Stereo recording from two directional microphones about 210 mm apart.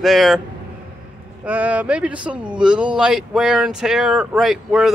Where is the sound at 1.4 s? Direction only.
5° right (ahead or behind).